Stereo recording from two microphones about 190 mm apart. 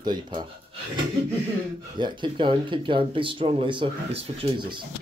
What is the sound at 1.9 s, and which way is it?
Speech, 25° right (ahead or behind).